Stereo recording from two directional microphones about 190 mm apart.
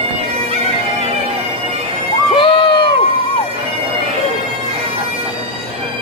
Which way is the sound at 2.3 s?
25° left (ahead or behind).